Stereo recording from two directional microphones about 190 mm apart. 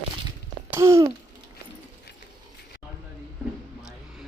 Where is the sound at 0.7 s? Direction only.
15° right (ahead or behind).